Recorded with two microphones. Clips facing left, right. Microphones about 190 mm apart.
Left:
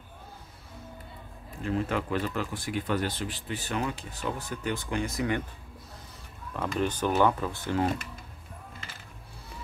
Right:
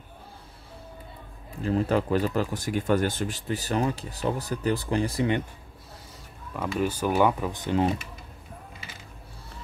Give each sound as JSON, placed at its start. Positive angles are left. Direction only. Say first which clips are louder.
{"t": 1.6, "sound": "speech", "louder": "right 5 dB", "side_deg": -35}
{"t": 6.5, "sound": "speech", "louder": "right 2 dB", "side_deg": -5}